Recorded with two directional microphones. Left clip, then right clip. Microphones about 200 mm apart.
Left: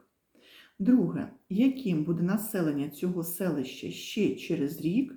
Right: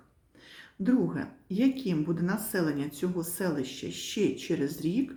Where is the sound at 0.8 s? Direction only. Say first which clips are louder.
Left 2 dB; 15° right (ahead or behind).